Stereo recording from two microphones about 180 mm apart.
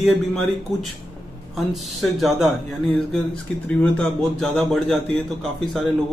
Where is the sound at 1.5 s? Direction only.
Centre (ahead or behind).